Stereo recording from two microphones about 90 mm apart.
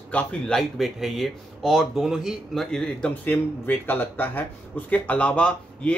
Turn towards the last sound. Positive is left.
turn(degrees=10)  # may be behind; listen again after turning